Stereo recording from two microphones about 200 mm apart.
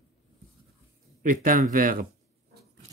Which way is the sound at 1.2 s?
40° right (ahead or behind).